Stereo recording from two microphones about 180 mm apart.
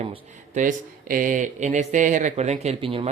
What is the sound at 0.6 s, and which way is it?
Speech, 50° right (ahead or behind).